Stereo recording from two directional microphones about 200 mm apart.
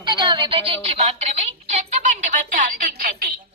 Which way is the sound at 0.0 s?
20° right (ahead or behind).